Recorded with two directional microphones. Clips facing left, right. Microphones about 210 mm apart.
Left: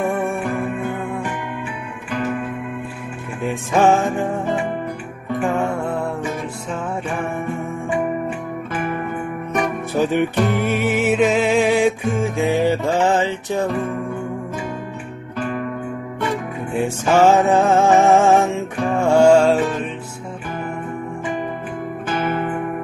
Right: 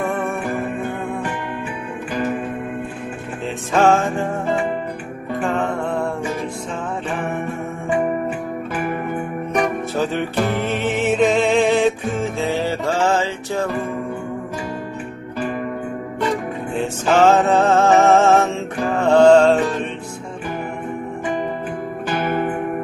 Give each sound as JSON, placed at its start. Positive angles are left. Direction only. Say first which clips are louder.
{"t": 3.7, "sound": "music", "louder": "even", "side_deg": 15}
{"t": 9.5, "sound": "music", "louder": "right 1 dB", "side_deg": 15}
{"t": 17.1, "sound": "music", "louder": "even", "side_deg": 15}